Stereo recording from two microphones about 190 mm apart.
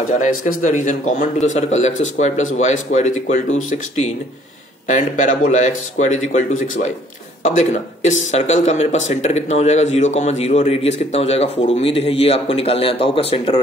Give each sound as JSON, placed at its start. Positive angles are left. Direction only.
{"t": 0.2, "sound": "speech", "side_deg": 45}
{"t": 4.8, "sound": "speech", "side_deg": 40}
{"t": 7.4, "sound": "speech", "side_deg": 40}